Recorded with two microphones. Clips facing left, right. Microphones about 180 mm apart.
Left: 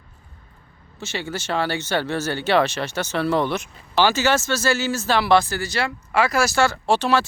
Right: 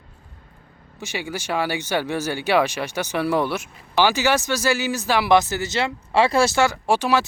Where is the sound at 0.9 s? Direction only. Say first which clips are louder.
Even; 15° right (ahead or behind).